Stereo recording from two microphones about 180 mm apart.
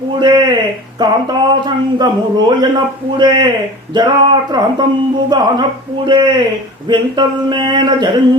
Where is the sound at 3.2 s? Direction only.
25° right (ahead or behind).